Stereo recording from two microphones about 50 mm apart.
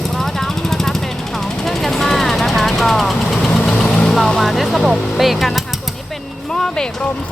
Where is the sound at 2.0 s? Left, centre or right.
Centre.